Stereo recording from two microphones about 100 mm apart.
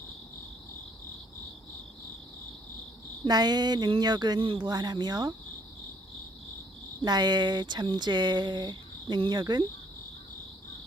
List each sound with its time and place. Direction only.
3.2 s speech: 45° right (ahead or behind)
4.4 s speech: 55° right (ahead or behind)
7.0 s speech: 45° right (ahead or behind)